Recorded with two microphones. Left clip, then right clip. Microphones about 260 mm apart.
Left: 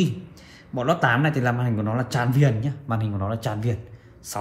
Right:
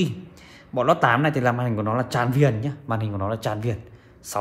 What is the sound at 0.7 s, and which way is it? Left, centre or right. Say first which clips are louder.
Speech: right 3 dB; right.